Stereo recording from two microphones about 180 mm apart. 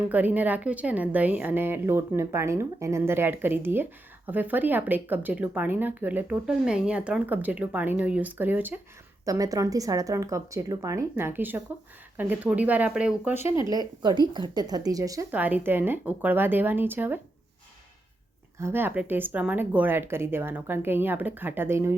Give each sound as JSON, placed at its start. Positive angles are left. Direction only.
{"t": 0.1, "sound": "speech", "side_deg": -10}
{"t": 13.7, "sound": "speech", "side_deg": -20}
{"t": 18.6, "sound": "speech", "side_deg": -10}